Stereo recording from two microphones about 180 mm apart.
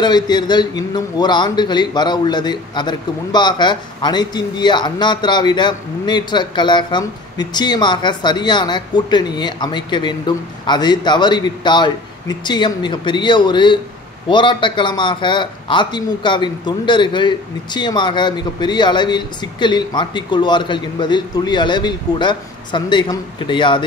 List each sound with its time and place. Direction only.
0.0 s a man's voice: 25° left (ahead or behind)